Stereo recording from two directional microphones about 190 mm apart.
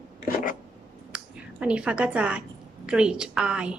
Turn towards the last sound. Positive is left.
turn(degrees=-5)  # may be behind; listen again after turning